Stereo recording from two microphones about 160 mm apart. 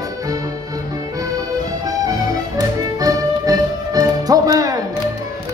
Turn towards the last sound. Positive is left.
turn(degrees=-25)  # may be behind; listen again after turning